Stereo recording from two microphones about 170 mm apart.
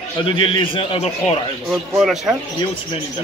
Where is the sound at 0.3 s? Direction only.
30° left (ahead or behind).